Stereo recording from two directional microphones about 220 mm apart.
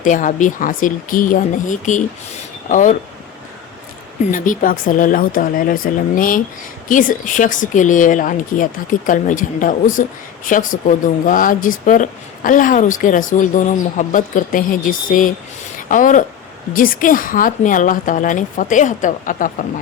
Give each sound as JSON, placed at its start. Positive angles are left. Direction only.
{"t": 0.0, "sound": "speech", "side_deg": 35}
{"t": 4.3, "sound": "speech", "side_deg": 35}